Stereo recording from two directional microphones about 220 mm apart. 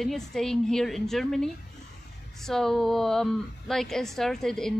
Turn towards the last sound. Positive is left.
turn(degrees=0)  # may be behind; listen again after turning